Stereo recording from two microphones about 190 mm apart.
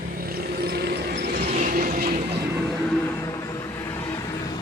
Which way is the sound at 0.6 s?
55° right (ahead or behind).